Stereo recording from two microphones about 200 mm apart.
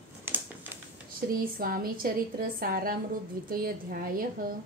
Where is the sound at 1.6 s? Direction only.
45° right (ahead or behind).